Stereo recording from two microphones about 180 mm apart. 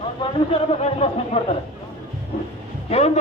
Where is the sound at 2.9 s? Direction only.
35° left (ahead or behind).